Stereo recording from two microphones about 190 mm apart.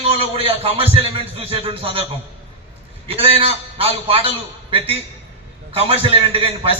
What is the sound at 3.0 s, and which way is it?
A man's voice, 30° right (ahead or behind).